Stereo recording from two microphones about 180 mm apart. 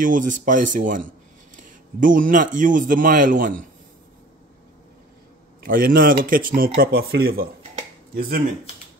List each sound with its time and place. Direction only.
0.0 s speech: 45° right (ahead or behind)
5.6 s speech: 50° right (ahead or behind)